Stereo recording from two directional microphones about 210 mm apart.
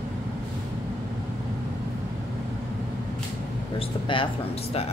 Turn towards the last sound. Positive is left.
turn(degrees=25)  # may be behind; listen again after turning